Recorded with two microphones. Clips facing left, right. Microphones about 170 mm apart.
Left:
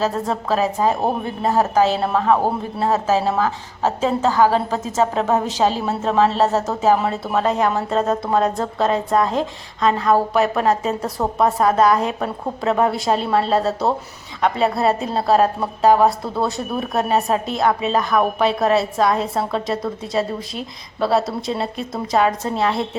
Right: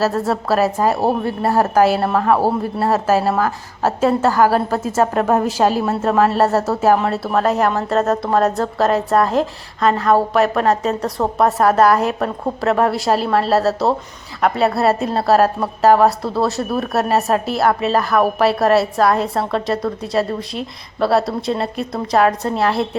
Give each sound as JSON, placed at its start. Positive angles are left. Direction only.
{"t": 0.0, "sound": "a woman's voice", "side_deg": -5}
{"t": 1.2, "sound": "speech", "side_deg": 15}
{"t": 1.7, "sound": "a woman's voice", "side_deg": -10}
{"t": 2.0, "sound": "a woman's voice", "side_deg": 0}
{"t": 6.9, "sound": "a woman's voice", "side_deg": 5}